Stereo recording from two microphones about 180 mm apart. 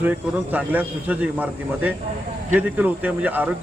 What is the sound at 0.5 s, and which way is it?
A man's voice, 10° right (ahead or behind).